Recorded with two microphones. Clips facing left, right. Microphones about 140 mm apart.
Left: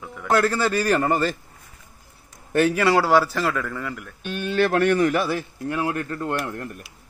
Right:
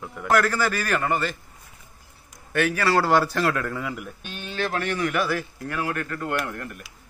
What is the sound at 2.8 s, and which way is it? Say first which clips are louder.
Speech: even; 15° left (ahead or behind).